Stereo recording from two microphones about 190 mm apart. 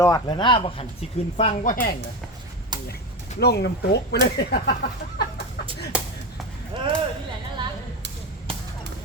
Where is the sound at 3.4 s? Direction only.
60° left (ahead or behind).